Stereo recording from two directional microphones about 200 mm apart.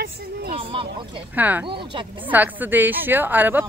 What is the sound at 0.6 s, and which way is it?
Speech, 25° right (ahead or behind).